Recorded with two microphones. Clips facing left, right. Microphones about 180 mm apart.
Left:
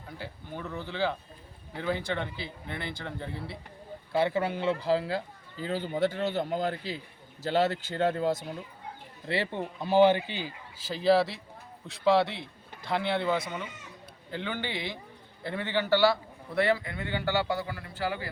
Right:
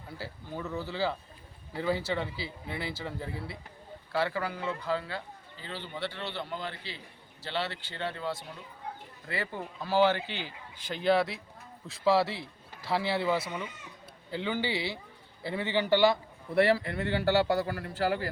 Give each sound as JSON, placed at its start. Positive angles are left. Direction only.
{"t": 0.2, "sound": "speech", "side_deg": -5}
{"t": 4.1, "sound": "a man's voice", "side_deg": 20}
{"t": 9.2, "sound": "speech", "side_deg": 25}
{"t": 16.6, "sound": "a man's voice", "side_deg": -35}